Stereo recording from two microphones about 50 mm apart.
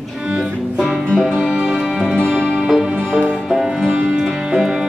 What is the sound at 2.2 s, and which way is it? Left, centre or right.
Music, centre.